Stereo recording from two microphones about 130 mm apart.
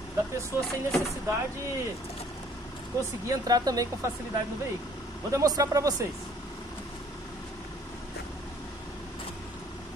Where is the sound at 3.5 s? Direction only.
30° right (ahead or behind).